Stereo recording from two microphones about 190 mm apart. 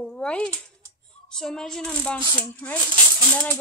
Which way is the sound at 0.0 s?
5° left (ahead or behind).